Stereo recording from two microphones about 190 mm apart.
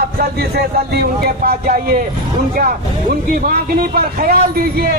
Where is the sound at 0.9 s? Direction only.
55° right (ahead or behind).